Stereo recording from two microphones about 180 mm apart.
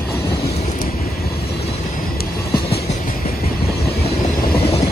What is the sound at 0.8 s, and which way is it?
Vehicle, 55° left (ahead or behind).